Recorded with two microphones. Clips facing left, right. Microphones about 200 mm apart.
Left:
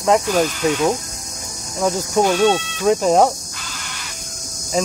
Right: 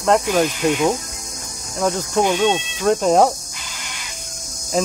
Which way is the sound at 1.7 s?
Centre (ahead or behind).